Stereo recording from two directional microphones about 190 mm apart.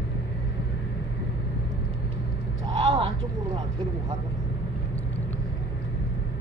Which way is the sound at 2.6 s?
25° right (ahead or behind).